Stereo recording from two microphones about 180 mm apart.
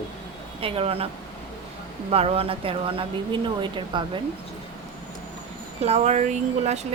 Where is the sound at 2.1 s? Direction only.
35° right (ahead or behind).